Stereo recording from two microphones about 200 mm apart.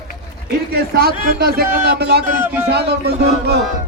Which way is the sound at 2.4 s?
10° right (ahead or behind).